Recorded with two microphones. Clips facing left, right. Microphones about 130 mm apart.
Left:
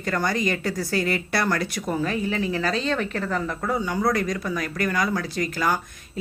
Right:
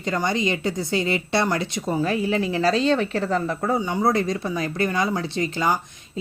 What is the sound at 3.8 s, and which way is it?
Speech, 25° right (ahead or behind).